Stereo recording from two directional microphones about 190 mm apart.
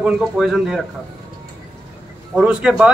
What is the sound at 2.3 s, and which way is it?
Speech, 5° right (ahead or behind).